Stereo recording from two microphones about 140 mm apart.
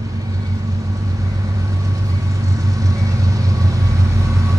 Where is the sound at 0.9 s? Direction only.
25° right (ahead or behind).